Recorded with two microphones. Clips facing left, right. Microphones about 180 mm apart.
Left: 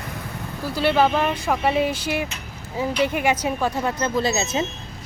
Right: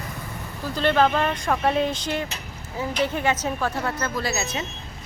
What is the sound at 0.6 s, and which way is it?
Speech, 10° left (ahead or behind).